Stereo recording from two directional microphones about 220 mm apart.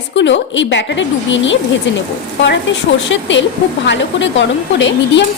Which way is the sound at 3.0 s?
55° left (ahead or behind).